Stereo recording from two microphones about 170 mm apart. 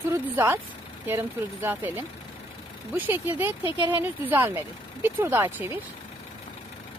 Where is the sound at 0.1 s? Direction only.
15° right (ahead or behind).